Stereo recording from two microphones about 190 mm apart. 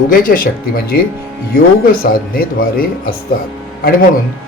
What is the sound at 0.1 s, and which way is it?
Speech, 50° left (ahead or behind).